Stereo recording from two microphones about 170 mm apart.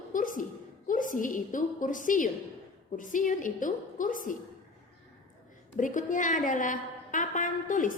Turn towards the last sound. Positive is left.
turn(degrees=50)  # may be behind; listen again after turning